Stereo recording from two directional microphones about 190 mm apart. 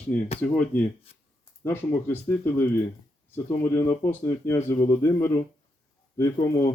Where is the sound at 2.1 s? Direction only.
15° left (ahead or behind).